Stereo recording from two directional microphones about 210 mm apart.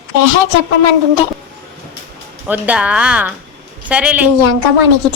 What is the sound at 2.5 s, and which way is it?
A woman's voice, 5° right (ahead or behind).